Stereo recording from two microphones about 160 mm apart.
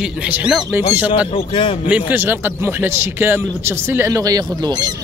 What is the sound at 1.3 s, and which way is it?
Speech, 35° left (ahead or behind).